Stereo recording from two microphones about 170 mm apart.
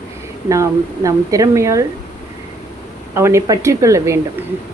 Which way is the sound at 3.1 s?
15° right (ahead or behind).